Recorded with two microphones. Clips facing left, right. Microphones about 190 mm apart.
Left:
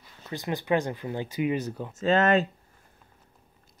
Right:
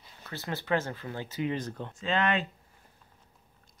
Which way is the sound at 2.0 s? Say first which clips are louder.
Left 7 dB; 45° left (ahead or behind).